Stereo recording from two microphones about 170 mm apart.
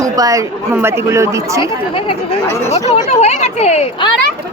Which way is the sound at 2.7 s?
40° left (ahead or behind).